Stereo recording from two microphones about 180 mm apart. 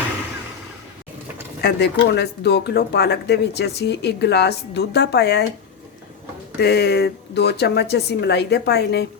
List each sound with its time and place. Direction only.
1.6 s speech: 65° left (ahead or behind)
6.6 s speech: 65° left (ahead or behind)